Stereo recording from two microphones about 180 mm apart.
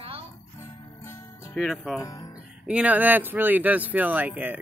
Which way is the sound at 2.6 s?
5° right (ahead or behind).